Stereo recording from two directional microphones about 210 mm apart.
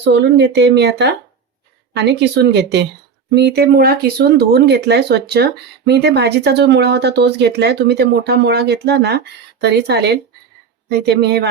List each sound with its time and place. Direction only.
0.0 s speech: 55° right (ahead or behind)